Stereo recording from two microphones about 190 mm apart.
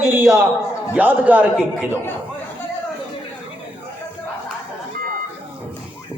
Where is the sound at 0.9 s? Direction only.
10° right (ahead or behind).